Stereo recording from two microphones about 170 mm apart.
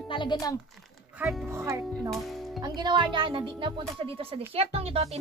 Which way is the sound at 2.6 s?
25° right (ahead or behind).